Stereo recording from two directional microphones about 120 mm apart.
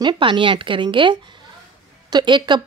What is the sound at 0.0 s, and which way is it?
Speech, 45° right (ahead or behind).